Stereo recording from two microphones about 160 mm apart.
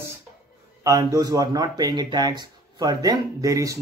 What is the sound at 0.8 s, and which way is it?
Speech, 20° right (ahead or behind).